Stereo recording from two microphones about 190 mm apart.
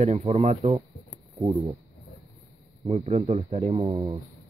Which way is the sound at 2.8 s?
35° right (ahead or behind).